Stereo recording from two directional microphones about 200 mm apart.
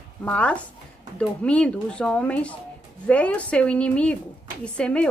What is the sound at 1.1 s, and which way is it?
Speech, 5° left (ahead or behind).